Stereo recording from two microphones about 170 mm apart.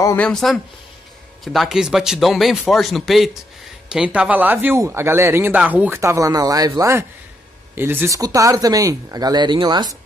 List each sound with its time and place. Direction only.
0.0 s a man's voice: 10° left (ahead or behind); by 9.9 s 25° right (ahead or behind)